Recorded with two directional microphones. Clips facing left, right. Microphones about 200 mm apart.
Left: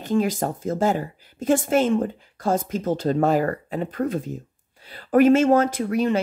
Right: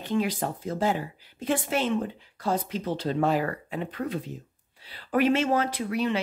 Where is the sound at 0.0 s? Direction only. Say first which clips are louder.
Left 5 dB; 45° left (ahead or behind).